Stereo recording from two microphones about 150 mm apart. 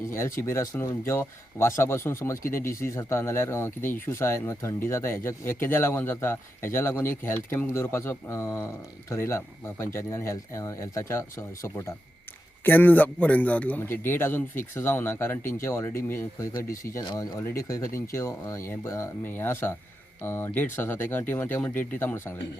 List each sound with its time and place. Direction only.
0.1 s a man's voice: 20° left (ahead or behind)